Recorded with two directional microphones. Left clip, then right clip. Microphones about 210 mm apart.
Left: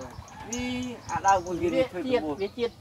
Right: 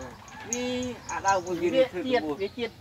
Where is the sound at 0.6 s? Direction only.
45° left (ahead or behind).